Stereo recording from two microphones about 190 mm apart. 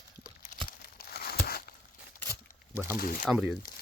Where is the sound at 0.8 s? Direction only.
50° left (ahead or behind).